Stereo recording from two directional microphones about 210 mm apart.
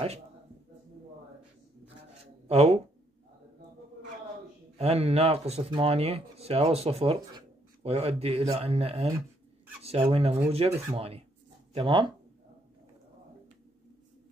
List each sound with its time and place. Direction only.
2.4 s speech: 30° right (ahead or behind)
4.7 s speech: 30° right (ahead or behind)